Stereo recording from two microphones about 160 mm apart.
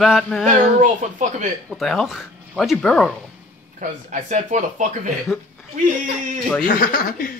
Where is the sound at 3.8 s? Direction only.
50° right (ahead or behind).